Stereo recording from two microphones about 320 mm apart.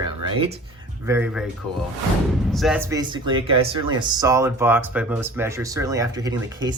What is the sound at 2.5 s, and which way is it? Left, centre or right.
Speech, centre.